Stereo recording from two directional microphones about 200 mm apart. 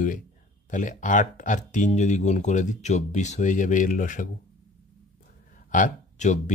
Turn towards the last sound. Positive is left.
turn(degrees=35)  # may be behind; listen again after turning